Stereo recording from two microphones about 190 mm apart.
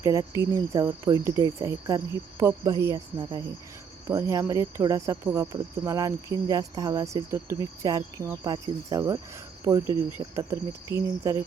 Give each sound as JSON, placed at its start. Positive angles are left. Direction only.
{"t": 0.0, "sound": "speech", "side_deg": -15}